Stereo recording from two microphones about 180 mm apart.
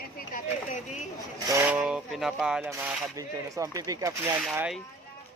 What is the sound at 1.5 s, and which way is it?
Speech, 10° right (ahead or behind).